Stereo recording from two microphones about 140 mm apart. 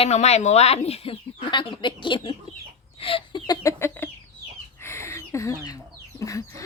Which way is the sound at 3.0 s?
40° left (ahead or behind).